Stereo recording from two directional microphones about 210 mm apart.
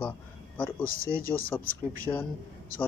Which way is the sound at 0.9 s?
45° left (ahead or behind).